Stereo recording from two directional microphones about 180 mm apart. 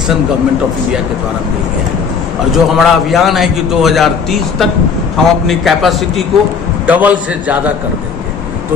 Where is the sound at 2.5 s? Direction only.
Centre (ahead or behind).